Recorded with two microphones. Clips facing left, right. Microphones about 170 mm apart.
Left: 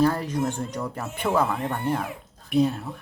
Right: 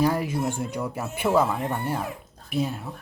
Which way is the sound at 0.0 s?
10° right (ahead or behind).